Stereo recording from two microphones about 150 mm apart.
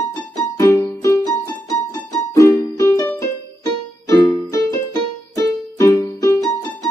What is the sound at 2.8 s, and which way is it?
Music, 20° left (ahead or behind).